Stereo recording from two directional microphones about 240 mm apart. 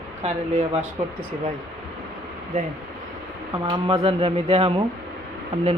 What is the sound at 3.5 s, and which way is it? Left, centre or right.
Speech, centre.